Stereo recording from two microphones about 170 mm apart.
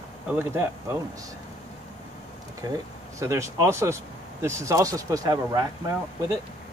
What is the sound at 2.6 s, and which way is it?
Speech, 25° right (ahead or behind).